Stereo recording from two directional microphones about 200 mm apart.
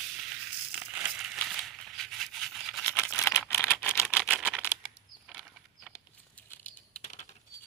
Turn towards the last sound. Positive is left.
turn(degrees=35)  # may be behind; listen again after turning